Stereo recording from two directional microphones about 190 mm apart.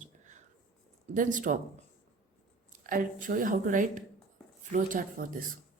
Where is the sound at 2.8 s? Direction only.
45° right (ahead or behind).